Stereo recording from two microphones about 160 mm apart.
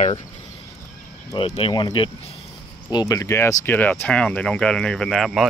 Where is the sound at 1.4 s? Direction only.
30° left (ahead or behind); by 5.4 s centre (ahead or behind).